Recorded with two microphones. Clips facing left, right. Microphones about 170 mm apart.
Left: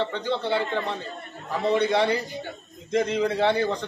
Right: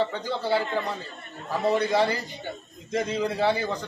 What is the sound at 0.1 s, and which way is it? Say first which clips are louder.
A man's voice: left 1 dB; 5° right (ahead or behind).